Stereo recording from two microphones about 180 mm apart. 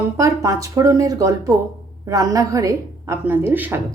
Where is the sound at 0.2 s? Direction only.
15° right (ahead or behind).